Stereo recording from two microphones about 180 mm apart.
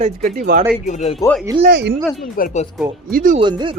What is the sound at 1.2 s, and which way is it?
Speech, 20° left (ahead or behind).